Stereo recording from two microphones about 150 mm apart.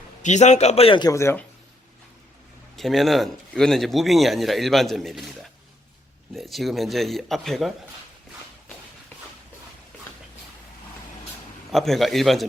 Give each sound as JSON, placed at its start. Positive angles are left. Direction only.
{"t": 0.2, "sound": "a man's voice", "side_deg": 50}
{"t": 2.7, "sound": "a man's voice", "side_deg": 0}
{"t": 11.7, "sound": "a man's voice", "side_deg": 0}